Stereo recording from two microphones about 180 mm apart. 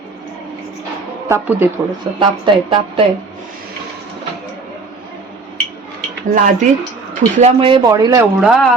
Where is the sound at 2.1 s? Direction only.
25° right (ahead or behind).